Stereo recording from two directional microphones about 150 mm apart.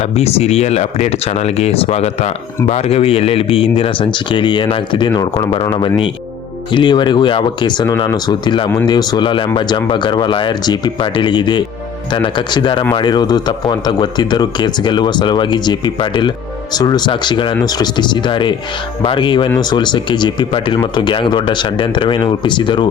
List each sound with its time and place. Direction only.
0.0 s speech: 45° left (ahead or behind)
6.7 s speech: 30° left (ahead or behind)